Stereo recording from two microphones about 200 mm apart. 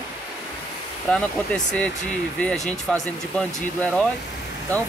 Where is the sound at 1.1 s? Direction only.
5° left (ahead or behind).